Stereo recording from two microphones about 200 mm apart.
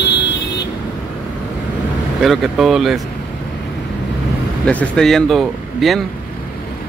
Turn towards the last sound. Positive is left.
turn(degrees=0)  # may be behind; listen again after turning